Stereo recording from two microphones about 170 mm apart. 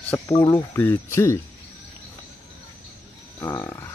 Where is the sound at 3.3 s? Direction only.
20° left (ahead or behind).